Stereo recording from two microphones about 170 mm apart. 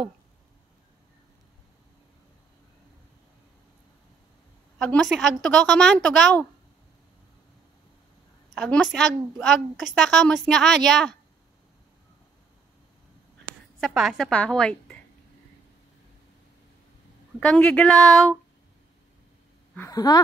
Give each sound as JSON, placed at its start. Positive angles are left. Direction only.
{"t": 4.7, "sound": "a woman's voice", "side_deg": 5}
{"t": 8.5, "sound": "a woman's voice", "side_deg": 5}
{"t": 13.7, "sound": "a woman's voice", "side_deg": 0}
{"t": 17.4, "sound": "a woman's voice", "side_deg": 5}
{"t": 19.9, "sound": "speech", "side_deg": 20}